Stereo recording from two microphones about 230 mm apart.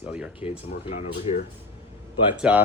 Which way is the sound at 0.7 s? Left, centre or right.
Left.